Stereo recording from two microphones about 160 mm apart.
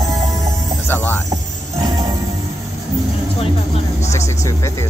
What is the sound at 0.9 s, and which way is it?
Music, 10° left (ahead or behind).